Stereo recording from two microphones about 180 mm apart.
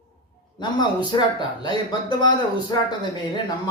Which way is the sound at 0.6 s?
25° left (ahead or behind).